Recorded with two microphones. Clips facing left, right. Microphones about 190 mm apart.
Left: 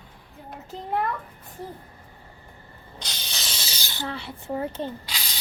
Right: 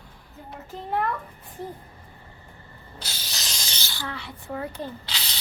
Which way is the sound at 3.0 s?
5° right (ahead or behind).